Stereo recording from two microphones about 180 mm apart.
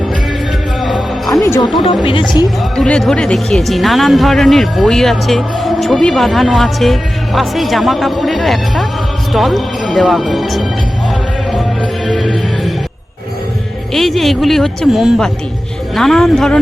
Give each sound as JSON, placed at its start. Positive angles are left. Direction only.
{"t": 0.8, "sound": "music", "side_deg": 0}
{"t": 1.3, "sound": "speech", "side_deg": 15}
{"t": 1.7, "sound": "speech", "side_deg": 30}
{"t": 2.7, "sound": "speech", "side_deg": 5}
{"t": 11.5, "sound": "music", "side_deg": 5}
{"t": 13.9, "sound": "speech", "side_deg": 0}